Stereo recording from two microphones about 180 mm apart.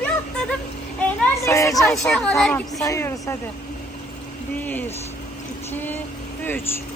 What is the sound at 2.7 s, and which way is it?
Speech, 20° left (ahead or behind).